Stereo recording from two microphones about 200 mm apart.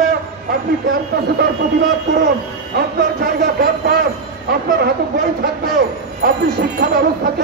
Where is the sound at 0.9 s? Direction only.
50° right (ahead or behind).